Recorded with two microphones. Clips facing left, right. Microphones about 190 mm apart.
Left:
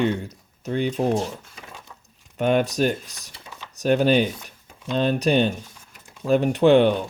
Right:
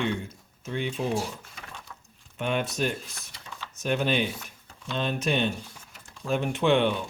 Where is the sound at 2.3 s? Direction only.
40° left (ahead or behind).